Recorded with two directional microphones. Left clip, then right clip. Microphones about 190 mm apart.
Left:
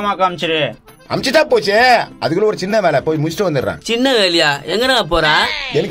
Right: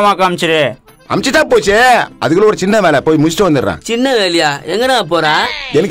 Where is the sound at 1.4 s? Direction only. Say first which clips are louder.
Right 5 dB; 35° right (ahead or behind).